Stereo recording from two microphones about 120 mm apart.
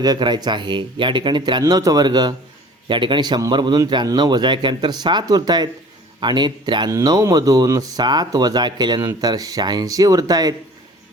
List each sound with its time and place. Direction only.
0.0 s speech: 35° right (ahead or behind)
6.9 s speech: 30° right (ahead or behind)